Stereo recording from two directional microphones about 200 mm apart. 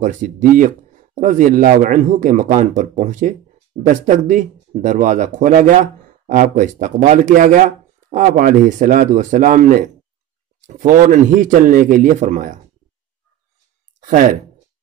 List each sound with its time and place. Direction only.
0.0 s speech: 40° right (ahead or behind)
14.0 s speech: 40° right (ahead or behind)